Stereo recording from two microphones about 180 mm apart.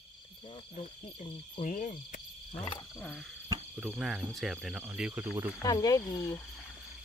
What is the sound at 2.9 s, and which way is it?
Speech, centre (ahead or behind).